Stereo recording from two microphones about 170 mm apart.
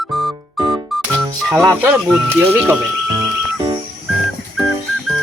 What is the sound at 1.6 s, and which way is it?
Speech, 10° right (ahead or behind).